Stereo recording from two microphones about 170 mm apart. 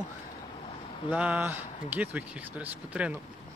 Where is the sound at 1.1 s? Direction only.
5° right (ahead or behind).